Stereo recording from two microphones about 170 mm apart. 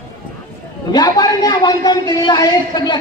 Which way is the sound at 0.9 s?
25° left (ahead or behind).